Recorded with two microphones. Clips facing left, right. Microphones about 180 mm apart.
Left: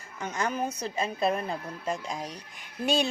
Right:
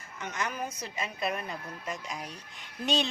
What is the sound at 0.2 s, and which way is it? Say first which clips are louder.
Speech: left 5 dB; 30° left (ahead or behind).